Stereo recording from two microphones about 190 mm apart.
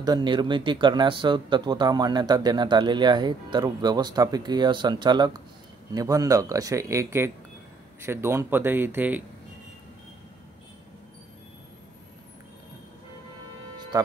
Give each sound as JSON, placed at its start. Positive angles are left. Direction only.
{"t": 0.0, "sound": "speech", "side_deg": -20}
{"t": 13.7, "sound": "music", "side_deg": -20}